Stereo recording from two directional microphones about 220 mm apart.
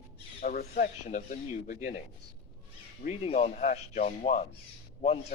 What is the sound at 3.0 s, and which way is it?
Speech, 30° left (ahead or behind).